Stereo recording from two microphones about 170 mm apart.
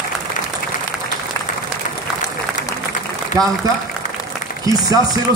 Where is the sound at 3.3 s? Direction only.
20° right (ahead or behind).